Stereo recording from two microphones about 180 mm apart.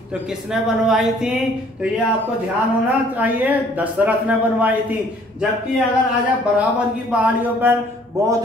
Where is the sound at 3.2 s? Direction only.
10° right (ahead or behind).